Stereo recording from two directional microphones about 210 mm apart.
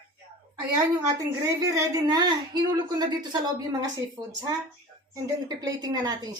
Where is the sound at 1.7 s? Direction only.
15° right (ahead or behind).